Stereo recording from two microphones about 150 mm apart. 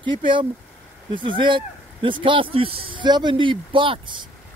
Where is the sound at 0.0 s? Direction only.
30° right (ahead or behind).